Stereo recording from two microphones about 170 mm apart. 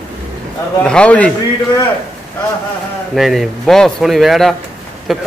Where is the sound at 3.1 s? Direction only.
Centre (ahead or behind).